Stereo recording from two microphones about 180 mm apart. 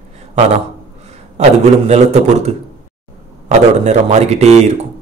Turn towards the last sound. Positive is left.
turn(degrees=-40)  # may be behind; listen again after turning